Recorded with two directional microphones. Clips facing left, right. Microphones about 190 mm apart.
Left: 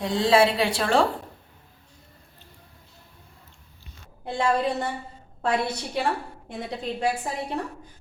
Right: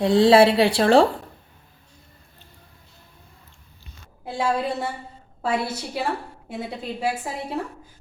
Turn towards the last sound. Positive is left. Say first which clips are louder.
# even
turn(degrees=-5)  # may be behind; listen again after turning